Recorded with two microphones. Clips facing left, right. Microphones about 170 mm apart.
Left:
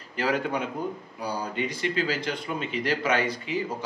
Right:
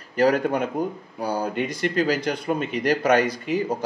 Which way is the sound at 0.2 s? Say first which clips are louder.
Right 7 dB; 45° right (ahead or behind).